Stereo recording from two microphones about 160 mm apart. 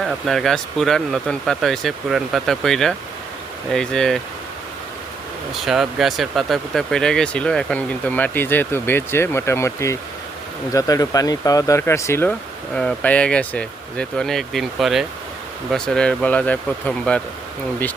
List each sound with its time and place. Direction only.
0.0 s speech: centre (ahead or behind)
5.5 s speech: centre (ahead or behind)